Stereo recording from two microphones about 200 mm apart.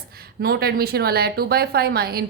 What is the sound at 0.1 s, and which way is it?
A woman's voice, 50° right (ahead or behind).